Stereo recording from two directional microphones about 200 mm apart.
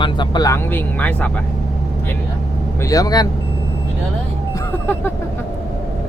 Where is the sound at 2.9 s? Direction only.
20° left (ahead or behind).